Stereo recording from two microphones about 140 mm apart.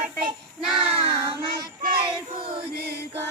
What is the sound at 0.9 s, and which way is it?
Child singing, 45° right (ahead or behind).